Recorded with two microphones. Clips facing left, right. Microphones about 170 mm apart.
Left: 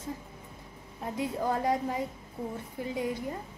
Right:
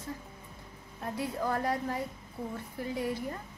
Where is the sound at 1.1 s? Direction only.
20° left (ahead or behind).